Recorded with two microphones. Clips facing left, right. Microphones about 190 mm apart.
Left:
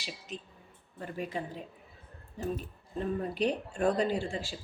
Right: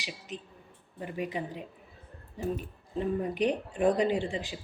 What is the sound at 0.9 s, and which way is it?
Speech, 15° right (ahead or behind).